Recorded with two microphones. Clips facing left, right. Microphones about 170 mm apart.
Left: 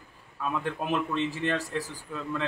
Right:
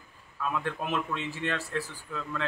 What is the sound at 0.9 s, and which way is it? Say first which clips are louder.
A man's voice: left 4 dB; 10° left (ahead or behind).